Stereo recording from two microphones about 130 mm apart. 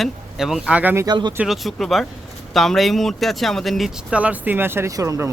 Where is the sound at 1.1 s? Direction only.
35° right (ahead or behind).